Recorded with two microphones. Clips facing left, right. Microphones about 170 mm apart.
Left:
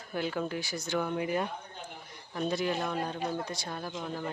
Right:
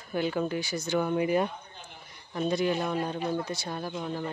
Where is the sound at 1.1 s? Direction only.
15° right (ahead or behind).